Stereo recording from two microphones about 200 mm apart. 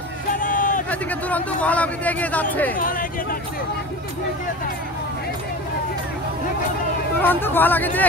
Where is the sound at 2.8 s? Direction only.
45° left (ahead or behind).